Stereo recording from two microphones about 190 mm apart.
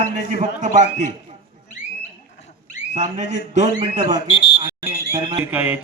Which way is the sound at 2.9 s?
40° right (ahead or behind).